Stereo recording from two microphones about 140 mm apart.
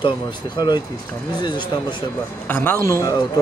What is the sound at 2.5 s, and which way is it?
Speech, 15° left (ahead or behind).